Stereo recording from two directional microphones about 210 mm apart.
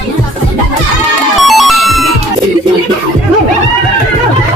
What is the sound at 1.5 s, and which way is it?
Music, centre (ahead or behind).